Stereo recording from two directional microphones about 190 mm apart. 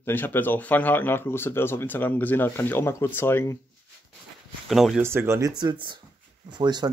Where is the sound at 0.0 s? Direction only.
10° left (ahead or behind).